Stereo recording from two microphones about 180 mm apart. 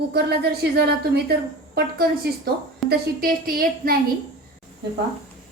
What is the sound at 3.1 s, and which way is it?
Speech, 55° right (ahead or behind).